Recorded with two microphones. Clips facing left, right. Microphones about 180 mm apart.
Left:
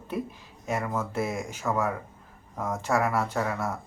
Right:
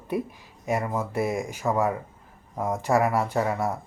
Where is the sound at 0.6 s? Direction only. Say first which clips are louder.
Right 3 dB; centre (ahead or behind).